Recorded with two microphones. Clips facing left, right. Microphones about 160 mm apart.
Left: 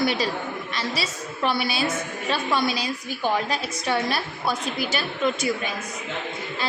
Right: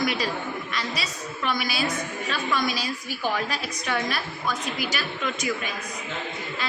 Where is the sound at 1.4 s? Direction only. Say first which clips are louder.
Left 3 dB; 30° left (ahead or behind).